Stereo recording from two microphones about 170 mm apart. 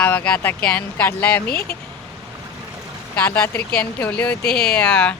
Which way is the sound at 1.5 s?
65° left (ahead or behind).